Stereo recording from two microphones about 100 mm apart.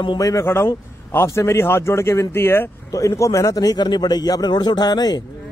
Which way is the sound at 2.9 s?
30° left (ahead or behind).